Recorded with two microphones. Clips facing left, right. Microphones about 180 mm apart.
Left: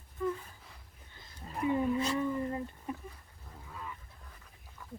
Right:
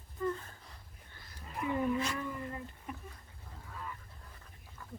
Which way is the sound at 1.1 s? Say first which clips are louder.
Left 2 dB; 20° left (ahead or behind).